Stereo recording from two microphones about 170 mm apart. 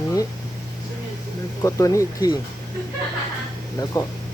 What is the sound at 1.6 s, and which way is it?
Speech, 20° left (ahead or behind).